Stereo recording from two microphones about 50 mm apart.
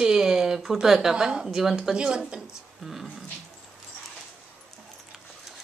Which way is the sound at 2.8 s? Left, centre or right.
Centre.